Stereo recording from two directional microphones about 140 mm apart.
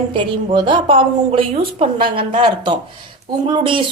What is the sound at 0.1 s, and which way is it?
A woman's voice, 35° right (ahead or behind).